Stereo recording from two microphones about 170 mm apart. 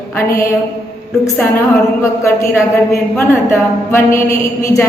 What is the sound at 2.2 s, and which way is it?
A woman's voice, 15° left (ahead or behind).